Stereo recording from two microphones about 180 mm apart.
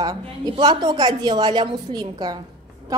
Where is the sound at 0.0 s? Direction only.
25° right (ahead or behind).